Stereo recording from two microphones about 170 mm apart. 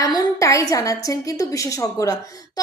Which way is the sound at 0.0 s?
20° left (ahead or behind).